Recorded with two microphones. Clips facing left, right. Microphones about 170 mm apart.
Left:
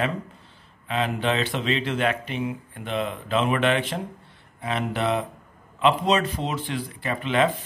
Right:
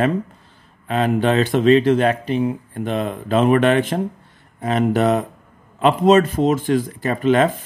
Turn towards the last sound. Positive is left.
turn(degrees=-45)  # may be behind; listen again after turning